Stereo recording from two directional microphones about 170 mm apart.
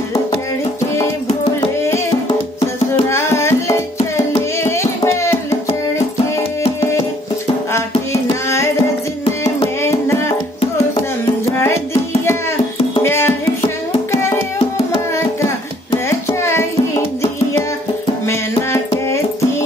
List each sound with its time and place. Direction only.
3.1 s music: 15° left (ahead or behind)
4.6 s tabla: 15° left (ahead or behind)
8.1 s tabla: 15° left (ahead or behind)
9.4 s music: 15° left (ahead or behind)
11.6 s music: 15° left (ahead or behind)
16.1 s music: 15° left (ahead or behind)
18.7 s music: 15° left (ahead or behind)